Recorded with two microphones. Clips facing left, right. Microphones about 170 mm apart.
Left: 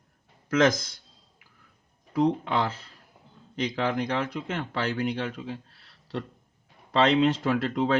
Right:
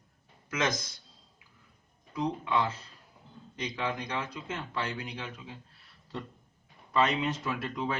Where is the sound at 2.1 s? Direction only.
75° left (ahead or behind).